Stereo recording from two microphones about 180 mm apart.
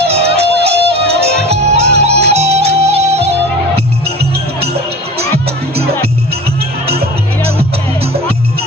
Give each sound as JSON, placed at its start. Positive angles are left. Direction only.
{"t": 0.1, "sound": "music", "side_deg": -35}